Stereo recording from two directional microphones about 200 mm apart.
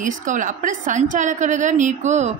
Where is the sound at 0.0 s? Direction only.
40° right (ahead or behind).